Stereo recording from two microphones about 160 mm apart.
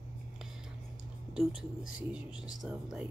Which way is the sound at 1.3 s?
Centre (ahead or behind).